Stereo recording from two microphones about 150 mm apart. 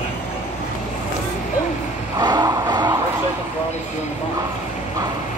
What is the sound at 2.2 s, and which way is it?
Music, 25° right (ahead or behind).